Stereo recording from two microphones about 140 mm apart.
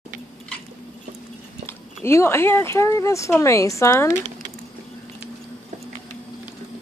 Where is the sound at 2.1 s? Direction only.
20° left (ahead or behind).